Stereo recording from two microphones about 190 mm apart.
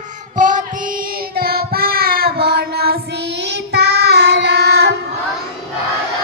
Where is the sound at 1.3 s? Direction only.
55° right (ahead or behind).